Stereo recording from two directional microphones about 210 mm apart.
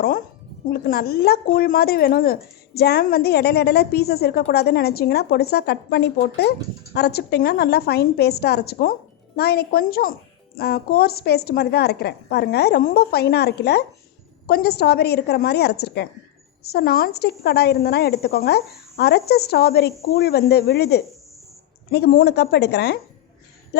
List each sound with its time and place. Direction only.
0.7 s speech: 45° left (ahead or behind)